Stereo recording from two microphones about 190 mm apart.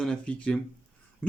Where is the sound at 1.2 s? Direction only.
5° left (ahead or behind).